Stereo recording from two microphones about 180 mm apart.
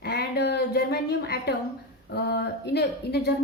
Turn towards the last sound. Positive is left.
turn(degrees=60)  # may be behind; listen again after turning